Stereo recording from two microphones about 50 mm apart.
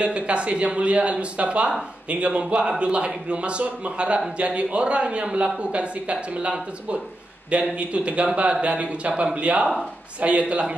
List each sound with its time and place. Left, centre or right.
0.0 s speech: right